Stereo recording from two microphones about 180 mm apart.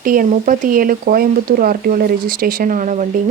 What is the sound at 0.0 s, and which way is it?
Speech, 50° right (ahead or behind).